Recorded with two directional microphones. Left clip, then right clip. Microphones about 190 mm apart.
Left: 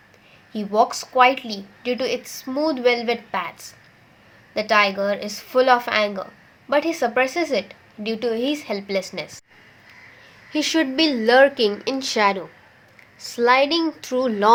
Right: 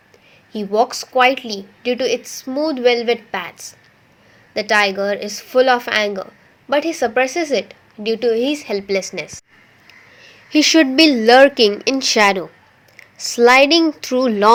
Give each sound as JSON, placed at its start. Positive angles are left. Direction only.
{"t": 0.5, "sound": "a woman's voice", "side_deg": -25}
{"t": 10.2, "sound": "speech", "side_deg": -35}